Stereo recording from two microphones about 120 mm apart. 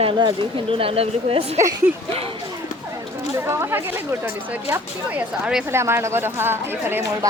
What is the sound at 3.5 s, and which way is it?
Speech, 20° right (ahead or behind).